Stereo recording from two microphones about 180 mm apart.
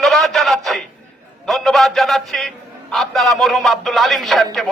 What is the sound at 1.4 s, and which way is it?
A man's voice, centre (ahead or behind).